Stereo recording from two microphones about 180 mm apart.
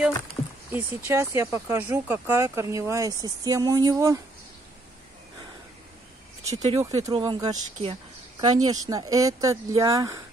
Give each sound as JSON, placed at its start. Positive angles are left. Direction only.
{"t": 0.7, "sound": "speech", "side_deg": -15}
{"t": 6.5, "sound": "speech", "side_deg": -35}
{"t": 6.8, "sound": "speech", "side_deg": -20}